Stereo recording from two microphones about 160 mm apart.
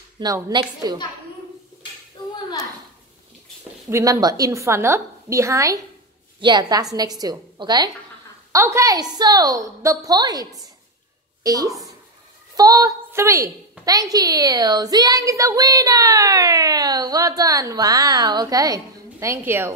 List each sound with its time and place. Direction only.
0.2 s a woman's voice: 25° right (ahead or behind)
3.9 s a woman's voice: 20° right (ahead or behind)